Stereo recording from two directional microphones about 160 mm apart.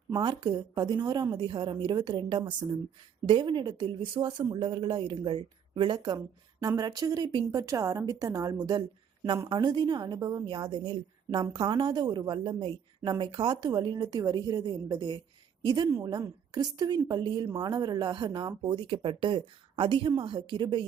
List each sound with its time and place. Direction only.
0.2 s speech: 30° right (ahead or behind)